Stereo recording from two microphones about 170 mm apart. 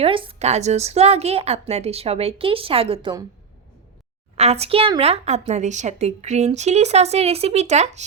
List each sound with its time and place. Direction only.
0.0 s a woman's voice: 30° right (ahead or behind)
4.4 s a woman's voice: 40° right (ahead or behind)